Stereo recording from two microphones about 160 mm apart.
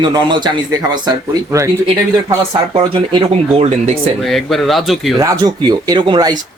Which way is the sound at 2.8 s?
35° right (ahead or behind).